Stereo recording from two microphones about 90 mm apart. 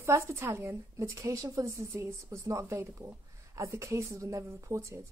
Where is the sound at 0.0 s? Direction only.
30° right (ahead or behind).